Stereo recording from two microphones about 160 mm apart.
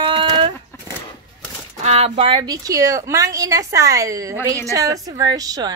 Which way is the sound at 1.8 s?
40° right (ahead or behind).